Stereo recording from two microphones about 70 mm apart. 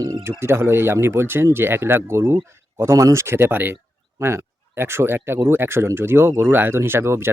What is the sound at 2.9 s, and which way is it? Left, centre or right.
Speech, right.